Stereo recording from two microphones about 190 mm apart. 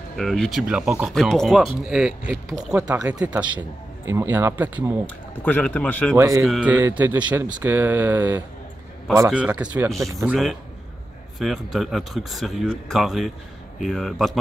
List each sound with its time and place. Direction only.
0.1 s speech: centre (ahead or behind)
5.0 s speech: 5° left (ahead or behind)
6.1 s speech: 15° right (ahead or behind)
6.4 s speech: 5° right (ahead or behind)